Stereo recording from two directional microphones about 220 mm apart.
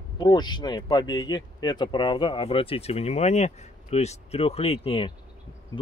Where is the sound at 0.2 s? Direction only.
20° left (ahead or behind).